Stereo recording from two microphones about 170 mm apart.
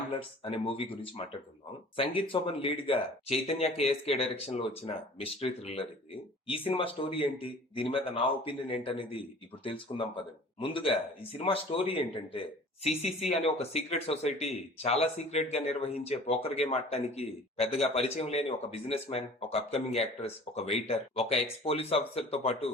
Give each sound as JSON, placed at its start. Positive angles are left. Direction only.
{"t": 0.1, "sound": "speech", "side_deg": 35}